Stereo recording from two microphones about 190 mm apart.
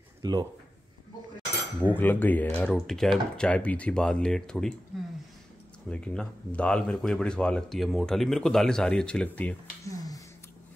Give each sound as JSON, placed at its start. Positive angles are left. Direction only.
{"t": 0.2, "sound": "speech", "side_deg": -20}
{"t": 1.8, "sound": "speech", "side_deg": 10}
{"t": 5.9, "sound": "speech", "side_deg": 5}
{"t": 9.9, "sound": "a sound", "side_deg": 20}